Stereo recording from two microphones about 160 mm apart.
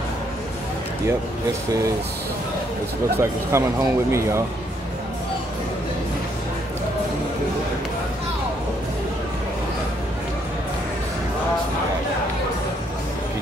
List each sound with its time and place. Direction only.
3.2 s speech: 15° right (ahead or behind)